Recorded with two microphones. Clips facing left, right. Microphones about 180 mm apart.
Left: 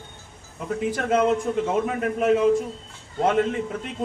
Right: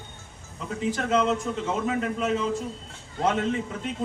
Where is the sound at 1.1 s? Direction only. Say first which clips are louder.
Left 4 dB; 50° left (ahead or behind).